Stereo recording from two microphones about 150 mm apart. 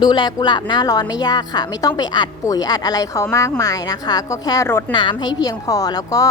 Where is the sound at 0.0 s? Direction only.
30° left (ahead or behind).